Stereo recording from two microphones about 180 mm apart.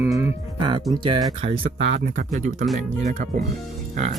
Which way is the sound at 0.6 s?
25° right (ahead or behind).